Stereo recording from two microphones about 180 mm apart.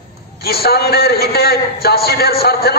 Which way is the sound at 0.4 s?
60° left (ahead or behind).